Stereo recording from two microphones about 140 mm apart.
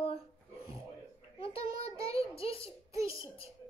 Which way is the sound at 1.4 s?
45° left (ahead or behind).